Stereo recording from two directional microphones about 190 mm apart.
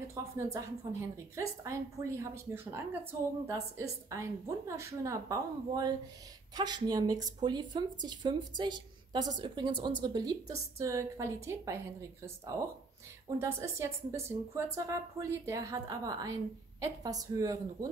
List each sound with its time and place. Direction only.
0.1 s a woman's voice: 15° right (ahead or behind)
13.4 s a woman's voice: 15° right (ahead or behind)